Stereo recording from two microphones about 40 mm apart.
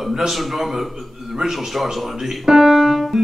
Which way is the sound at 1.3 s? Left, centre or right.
Centre.